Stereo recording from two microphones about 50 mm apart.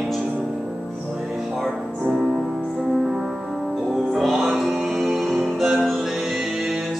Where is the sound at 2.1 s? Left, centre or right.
Centre.